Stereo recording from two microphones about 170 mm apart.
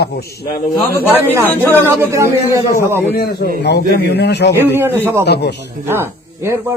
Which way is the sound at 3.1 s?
65° left (ahead or behind).